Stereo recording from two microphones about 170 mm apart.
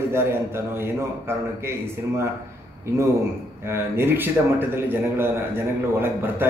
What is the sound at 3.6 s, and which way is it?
A man's voice, 15° right (ahead or behind).